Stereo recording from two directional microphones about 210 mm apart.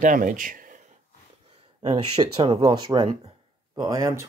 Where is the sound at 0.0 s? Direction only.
40° right (ahead or behind).